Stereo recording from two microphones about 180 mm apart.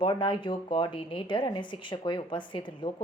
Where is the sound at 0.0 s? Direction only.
25° left (ahead or behind).